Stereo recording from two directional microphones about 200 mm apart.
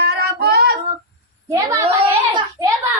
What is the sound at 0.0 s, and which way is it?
Female singing, 55° right (ahead or behind).